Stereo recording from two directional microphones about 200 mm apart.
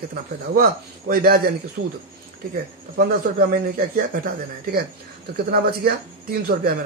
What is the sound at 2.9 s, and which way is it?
Speech, 50° right (ahead or behind).